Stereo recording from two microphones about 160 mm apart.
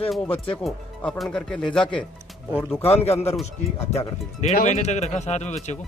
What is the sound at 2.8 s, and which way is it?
Speech, 40° left (ahead or behind).